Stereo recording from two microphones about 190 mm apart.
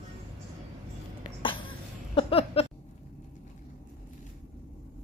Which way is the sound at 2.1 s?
30° left (ahead or behind).